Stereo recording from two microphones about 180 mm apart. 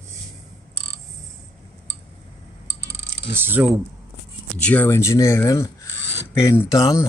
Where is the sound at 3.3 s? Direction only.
10° right (ahead or behind).